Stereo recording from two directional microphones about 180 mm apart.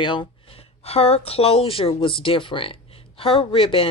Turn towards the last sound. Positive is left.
turn(degrees=30)  # may be behind; listen again after turning